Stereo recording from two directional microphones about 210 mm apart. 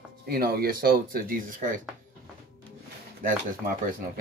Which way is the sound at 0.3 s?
45° right (ahead or behind).